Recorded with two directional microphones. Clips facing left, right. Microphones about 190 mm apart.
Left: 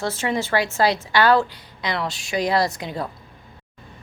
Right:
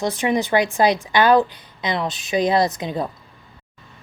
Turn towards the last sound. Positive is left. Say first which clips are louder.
# right 3 dB
turn(degrees=-20)  # may be behind; listen again after turning